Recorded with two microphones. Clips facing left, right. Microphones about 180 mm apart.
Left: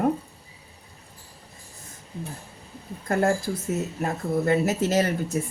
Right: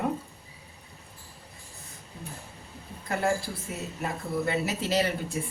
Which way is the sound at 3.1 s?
45° left (ahead or behind).